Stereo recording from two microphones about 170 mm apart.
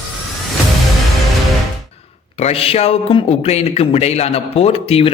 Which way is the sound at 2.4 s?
35° left (ahead or behind).